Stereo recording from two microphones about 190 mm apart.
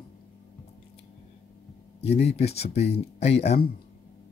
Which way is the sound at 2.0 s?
35° left (ahead or behind).